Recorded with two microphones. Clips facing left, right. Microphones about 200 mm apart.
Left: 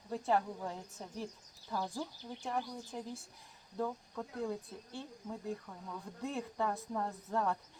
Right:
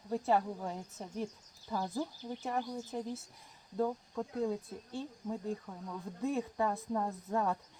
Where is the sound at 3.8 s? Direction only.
10° right (ahead or behind).